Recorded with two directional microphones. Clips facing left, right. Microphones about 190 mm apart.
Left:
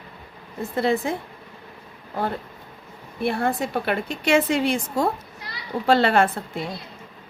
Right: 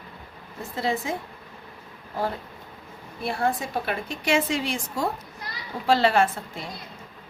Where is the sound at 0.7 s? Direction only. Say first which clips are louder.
Left 5 dB; 60° left (ahead or behind).